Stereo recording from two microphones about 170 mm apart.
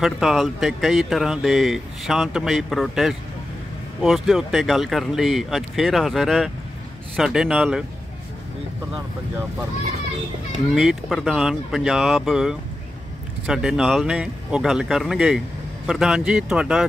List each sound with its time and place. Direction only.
0.0 s speech: centre (ahead or behind)
10.7 s speech: centre (ahead or behind)